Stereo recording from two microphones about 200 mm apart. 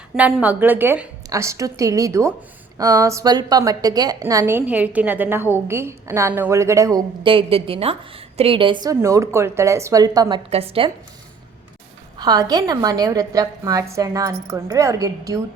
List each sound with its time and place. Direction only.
0.2 s a woman's voice: 5° right (ahead or behind); by 10.9 s 30° right (ahead or behind)
12.1 s a woman's voice: 20° right (ahead or behind)